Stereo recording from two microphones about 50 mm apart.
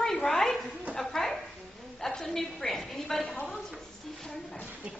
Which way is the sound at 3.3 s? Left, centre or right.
Left.